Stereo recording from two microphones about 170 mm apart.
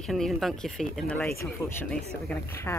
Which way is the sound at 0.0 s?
Centre (ahead or behind).